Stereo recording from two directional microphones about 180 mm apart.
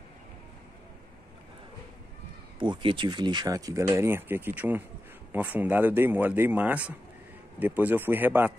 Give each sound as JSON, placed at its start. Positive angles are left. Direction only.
{"t": 2.6, "sound": "speech", "side_deg": -25}